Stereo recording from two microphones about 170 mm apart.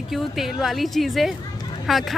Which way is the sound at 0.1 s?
Centre (ahead or behind).